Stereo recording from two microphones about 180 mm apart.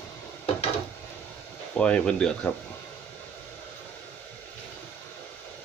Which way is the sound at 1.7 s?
5° left (ahead or behind).